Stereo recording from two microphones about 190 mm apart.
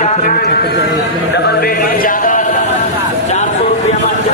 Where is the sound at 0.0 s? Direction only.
40° left (ahead or behind).